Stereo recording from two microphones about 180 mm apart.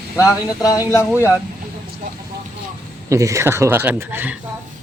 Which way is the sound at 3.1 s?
15° right (ahead or behind).